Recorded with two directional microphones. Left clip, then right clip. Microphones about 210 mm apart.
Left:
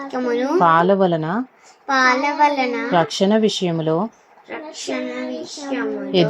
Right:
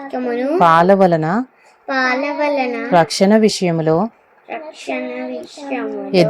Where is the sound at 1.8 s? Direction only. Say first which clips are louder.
Left 1 dB; 15° left (ahead or behind).